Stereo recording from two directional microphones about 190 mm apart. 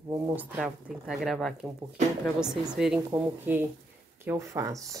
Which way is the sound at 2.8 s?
5° right (ahead or behind).